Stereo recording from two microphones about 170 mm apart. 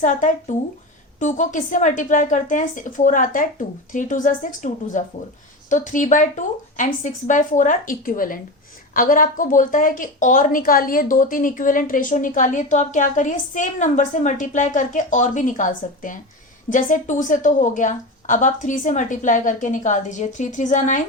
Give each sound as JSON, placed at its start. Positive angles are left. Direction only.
{"t": 0.0, "sound": "a woman's voice", "side_deg": 50}